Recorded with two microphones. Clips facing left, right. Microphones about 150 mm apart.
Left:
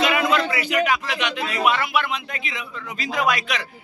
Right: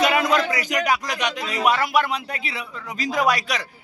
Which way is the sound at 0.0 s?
40° right (ahead or behind).